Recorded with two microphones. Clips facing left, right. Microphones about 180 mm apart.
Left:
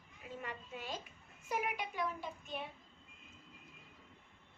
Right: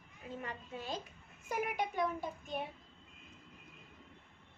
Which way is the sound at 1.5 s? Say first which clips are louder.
Right 3 dB; 50° right (ahead or behind).